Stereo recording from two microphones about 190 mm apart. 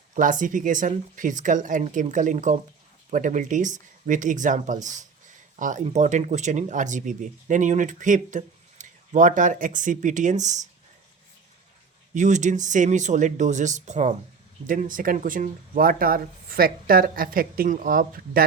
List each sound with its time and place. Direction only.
0.1 s speech: 45° right (ahead or behind)
12.1 s speech: 40° right (ahead or behind)